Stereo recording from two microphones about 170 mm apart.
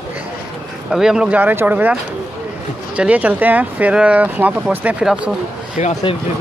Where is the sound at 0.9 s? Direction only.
5° right (ahead or behind).